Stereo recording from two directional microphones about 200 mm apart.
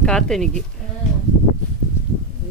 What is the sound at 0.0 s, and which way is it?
Speech, 5° left (ahead or behind).